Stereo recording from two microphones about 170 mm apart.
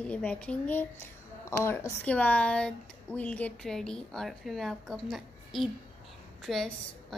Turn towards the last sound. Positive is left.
turn(degrees=0)  # may be behind; listen again after turning